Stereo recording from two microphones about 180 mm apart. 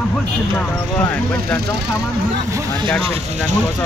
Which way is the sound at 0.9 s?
15° left (ahead or behind).